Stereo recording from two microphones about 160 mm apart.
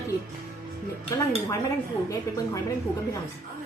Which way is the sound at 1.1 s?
20° left (ahead or behind).